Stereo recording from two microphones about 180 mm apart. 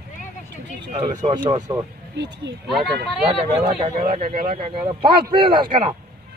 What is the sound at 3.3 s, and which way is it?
Speech, 30° right (ahead or behind).